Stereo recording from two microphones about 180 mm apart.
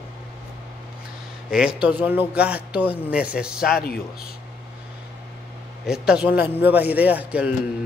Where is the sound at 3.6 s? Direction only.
60° left (ahead or behind).